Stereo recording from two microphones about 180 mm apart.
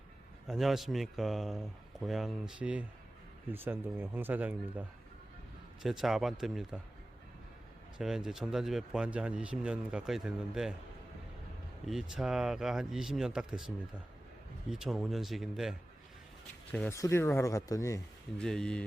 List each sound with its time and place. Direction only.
0.4 s speech: centre (ahead or behind)
5.8 s speech: centre (ahead or behind)
7.9 s speech: 5° right (ahead or behind)
11.9 s speech: 5° right (ahead or behind)
16.7 s speech: 5° left (ahead or behind)
18.3 s speech: 5° left (ahead or behind)